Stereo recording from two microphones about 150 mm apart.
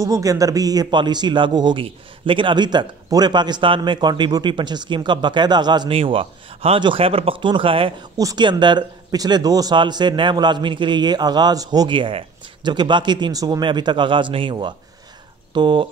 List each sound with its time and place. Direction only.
0.0 s speech: 20° right (ahead or behind)
8.2 s speech: 25° right (ahead or behind)